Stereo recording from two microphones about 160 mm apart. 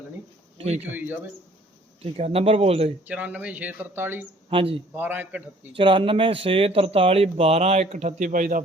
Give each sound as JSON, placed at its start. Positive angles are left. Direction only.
{"t": 0.9, "sound": "speech", "side_deg": -10}
{"t": 2.1, "sound": "speech", "side_deg": -40}
{"t": 3.1, "sound": "speech", "side_deg": -10}
{"t": 4.4, "sound": "speech", "side_deg": -35}
{"t": 4.9, "sound": "speech", "side_deg": -10}
{"t": 5.7, "sound": "speech", "side_deg": -30}